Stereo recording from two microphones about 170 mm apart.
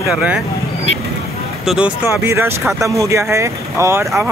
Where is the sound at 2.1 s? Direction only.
15° right (ahead or behind).